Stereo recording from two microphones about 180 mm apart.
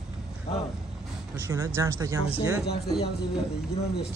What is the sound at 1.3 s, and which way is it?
Speech, 15° right (ahead or behind).